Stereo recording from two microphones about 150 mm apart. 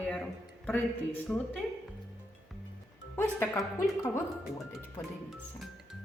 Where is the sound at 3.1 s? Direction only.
20° left (ahead or behind).